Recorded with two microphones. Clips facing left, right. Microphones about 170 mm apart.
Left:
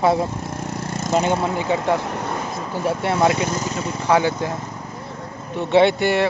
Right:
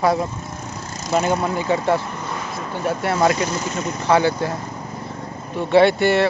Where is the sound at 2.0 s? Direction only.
70° left (ahead or behind).